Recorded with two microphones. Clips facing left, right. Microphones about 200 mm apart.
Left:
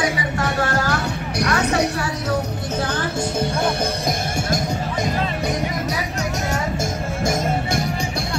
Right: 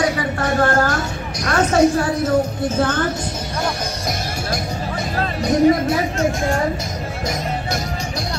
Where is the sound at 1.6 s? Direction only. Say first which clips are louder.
Right 10 dB; 65° left (ahead or behind).